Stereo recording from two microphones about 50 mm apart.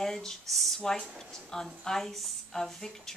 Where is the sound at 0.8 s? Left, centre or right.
Centre.